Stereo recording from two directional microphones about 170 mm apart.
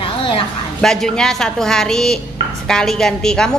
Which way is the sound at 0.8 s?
5° left (ahead or behind).